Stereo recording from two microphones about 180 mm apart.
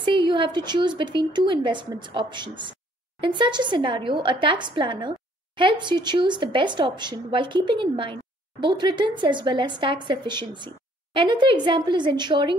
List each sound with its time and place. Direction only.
0.0 s a woman's voice: 25° right (ahead or behind)